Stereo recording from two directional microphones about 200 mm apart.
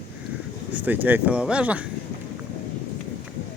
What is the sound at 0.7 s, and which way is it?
Speech, 10° right (ahead or behind).